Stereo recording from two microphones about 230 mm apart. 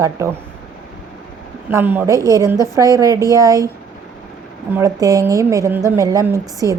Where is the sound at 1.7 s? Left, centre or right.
Centre.